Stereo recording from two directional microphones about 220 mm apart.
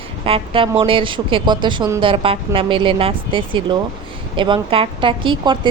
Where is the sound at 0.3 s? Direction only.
25° right (ahead or behind).